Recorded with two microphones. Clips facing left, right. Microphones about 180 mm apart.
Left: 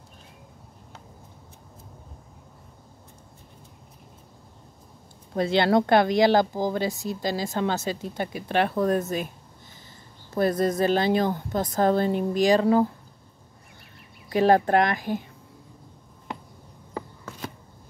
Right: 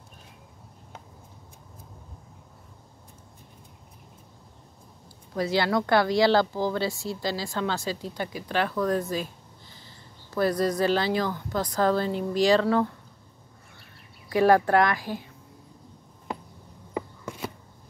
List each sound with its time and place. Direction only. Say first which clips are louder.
5.3 s speech: left 4 dB; 25° left (ahead or behind)
10.3 s speech: left 1 dB; 25° left (ahead or behind)
14.3 s speech: even; 20° left (ahead or behind)
16.9 s a sound: right 3 dB; 10° right (ahead or behind)